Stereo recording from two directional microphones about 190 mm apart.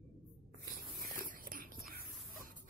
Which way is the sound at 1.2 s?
45° right (ahead or behind).